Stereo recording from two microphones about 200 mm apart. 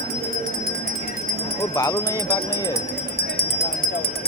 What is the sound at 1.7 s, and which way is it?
Speech, 15° left (ahead or behind).